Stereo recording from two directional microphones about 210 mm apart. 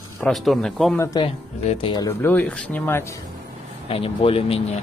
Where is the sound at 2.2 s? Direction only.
10° left (ahead or behind).